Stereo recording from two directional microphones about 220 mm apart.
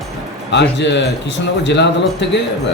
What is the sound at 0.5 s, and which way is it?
A man's voice, 55° left (ahead or behind).